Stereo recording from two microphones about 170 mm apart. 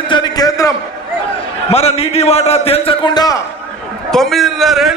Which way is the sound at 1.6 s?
40° left (ahead or behind).